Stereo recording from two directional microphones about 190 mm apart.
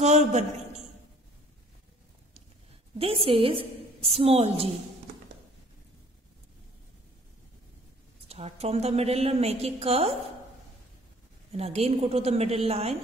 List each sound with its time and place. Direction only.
0.0 s a sound: 35° right (ahead or behind)
3.0 s a woman's voice: 30° right (ahead or behind)
8.3 s a woman's voice: 35° right (ahead or behind)
11.5 s a woman's voice: 30° right (ahead or behind)